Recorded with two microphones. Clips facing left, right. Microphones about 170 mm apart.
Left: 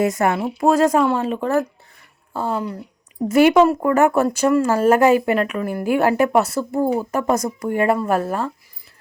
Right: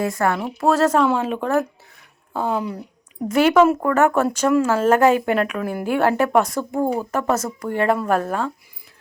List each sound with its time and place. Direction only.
0.0 s speech: 20° left (ahead or behind)
0.3 s speech: 10° left (ahead or behind)
1.0 s speech: centre (ahead or behind)